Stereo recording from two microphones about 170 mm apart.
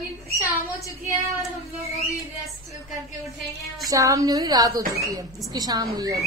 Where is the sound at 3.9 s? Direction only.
20° right (ahead or behind).